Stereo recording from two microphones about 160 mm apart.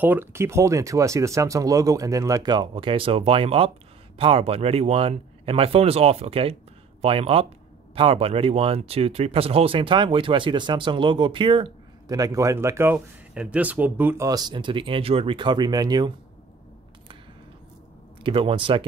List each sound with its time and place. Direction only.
0.0 s speech: 15° right (ahead or behind)
18.2 s speech: 35° right (ahead or behind)